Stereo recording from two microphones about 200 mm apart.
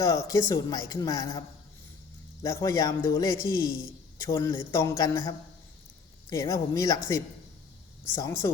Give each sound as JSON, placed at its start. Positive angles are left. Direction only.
{"t": 0.0, "sound": "speech", "side_deg": 15}
{"t": 6.3, "sound": "speech", "side_deg": 15}